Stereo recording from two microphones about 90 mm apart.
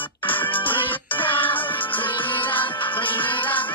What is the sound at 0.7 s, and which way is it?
Music, 70° left (ahead or behind).